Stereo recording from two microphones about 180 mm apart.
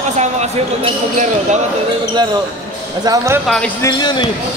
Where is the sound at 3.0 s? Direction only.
20° right (ahead or behind).